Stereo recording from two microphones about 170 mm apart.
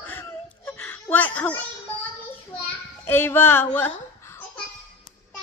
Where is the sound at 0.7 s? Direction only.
10° left (ahead or behind).